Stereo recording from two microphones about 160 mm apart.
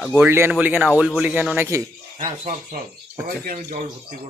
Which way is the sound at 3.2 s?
60° right (ahead or behind).